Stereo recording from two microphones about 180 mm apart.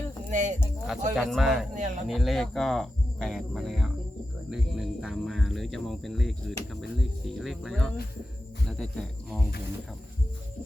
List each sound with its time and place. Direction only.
0.3 s speech: 45° right (ahead or behind)
0.9 s speech: centre (ahead or behind)
1.7 s speech: 40° right (ahead or behind)
2.0 s speech: centre (ahead or behind)